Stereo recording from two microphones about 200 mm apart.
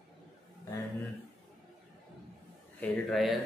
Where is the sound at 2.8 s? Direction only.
Centre (ahead or behind).